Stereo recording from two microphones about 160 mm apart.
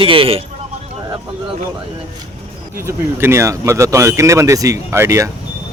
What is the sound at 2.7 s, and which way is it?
Speech, 15° right (ahead or behind).